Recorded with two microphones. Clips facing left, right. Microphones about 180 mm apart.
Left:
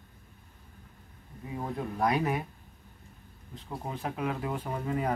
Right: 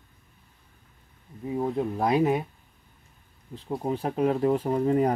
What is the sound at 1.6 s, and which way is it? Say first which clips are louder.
Speech: right 4 dB; 25° right (ahead or behind).